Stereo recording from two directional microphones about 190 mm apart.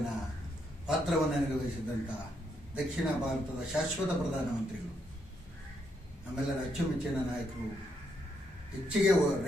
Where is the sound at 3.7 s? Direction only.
5° right (ahead or behind).